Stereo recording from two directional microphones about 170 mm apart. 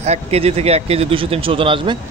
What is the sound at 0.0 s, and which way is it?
Speech, 40° right (ahead or behind).